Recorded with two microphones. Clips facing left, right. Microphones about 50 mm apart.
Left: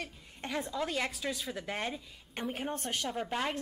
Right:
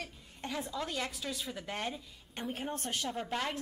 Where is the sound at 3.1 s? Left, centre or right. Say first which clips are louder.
Left 2 dB; centre.